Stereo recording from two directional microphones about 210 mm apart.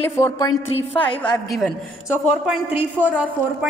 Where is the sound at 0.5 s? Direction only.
70° left (ahead or behind).